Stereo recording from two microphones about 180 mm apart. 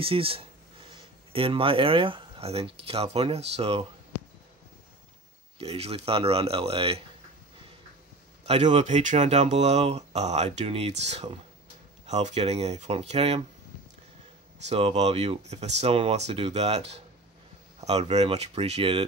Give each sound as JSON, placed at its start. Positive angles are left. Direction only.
{"t": 0.0, "sound": "a sound", "side_deg": -30}
{"t": 1.3, "sound": "speech", "side_deg": -30}
{"t": 5.6, "sound": "speech", "side_deg": -35}
{"t": 8.5, "sound": "speech", "side_deg": -35}
{"t": 14.7, "sound": "speech", "side_deg": -35}